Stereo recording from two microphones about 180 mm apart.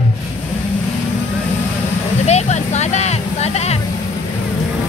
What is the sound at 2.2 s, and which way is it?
Music, 40° left (ahead or behind).